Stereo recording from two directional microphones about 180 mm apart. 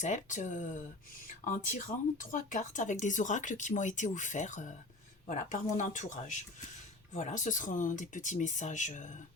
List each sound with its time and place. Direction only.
0.0 s speech: 45° left (ahead or behind)